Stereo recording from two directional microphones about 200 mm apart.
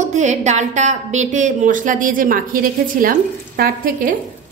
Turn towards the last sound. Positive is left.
turn(degrees=-45)  # may be behind; listen again after turning